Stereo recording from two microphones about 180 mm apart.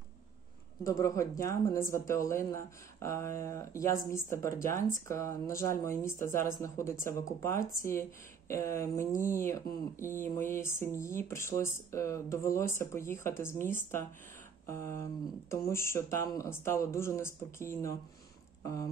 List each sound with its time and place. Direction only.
0.8 s speech: 15° left (ahead or behind)
15.5 s speech: 15° left (ahead or behind)